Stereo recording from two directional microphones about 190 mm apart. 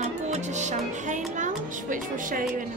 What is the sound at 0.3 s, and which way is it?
Music, 40° right (ahead or behind).